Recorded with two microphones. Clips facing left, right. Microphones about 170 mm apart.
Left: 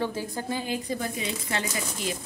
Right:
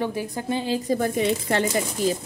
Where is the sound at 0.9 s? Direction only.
55° right (ahead or behind).